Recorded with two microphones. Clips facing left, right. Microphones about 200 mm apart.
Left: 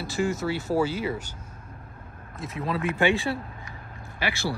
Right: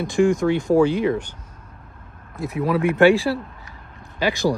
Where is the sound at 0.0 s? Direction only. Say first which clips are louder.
Right 9 dB; 5° left (ahead or behind).